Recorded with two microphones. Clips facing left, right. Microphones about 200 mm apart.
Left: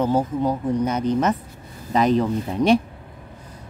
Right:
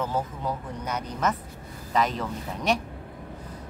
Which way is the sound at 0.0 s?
30° left (ahead or behind).